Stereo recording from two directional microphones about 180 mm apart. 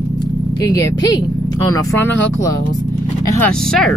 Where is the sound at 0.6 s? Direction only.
20° left (ahead or behind).